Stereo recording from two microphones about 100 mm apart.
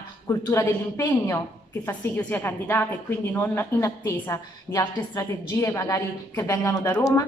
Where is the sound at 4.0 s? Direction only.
40° left (ahead or behind).